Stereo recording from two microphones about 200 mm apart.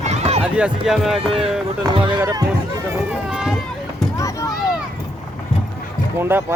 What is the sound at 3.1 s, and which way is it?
Run, 5° right (ahead or behind).